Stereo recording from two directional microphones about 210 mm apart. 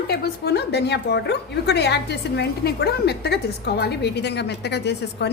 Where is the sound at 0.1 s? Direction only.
50° left (ahead or behind).